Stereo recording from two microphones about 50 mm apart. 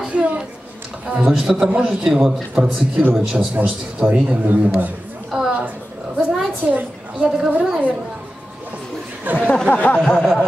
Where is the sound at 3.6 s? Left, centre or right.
Right.